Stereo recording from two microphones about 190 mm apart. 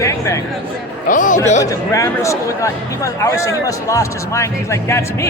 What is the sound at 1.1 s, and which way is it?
Speech, 45° left (ahead or behind).